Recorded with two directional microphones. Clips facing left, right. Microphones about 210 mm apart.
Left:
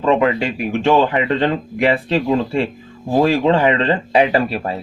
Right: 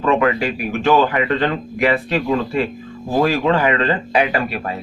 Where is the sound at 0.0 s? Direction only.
25° left (ahead or behind).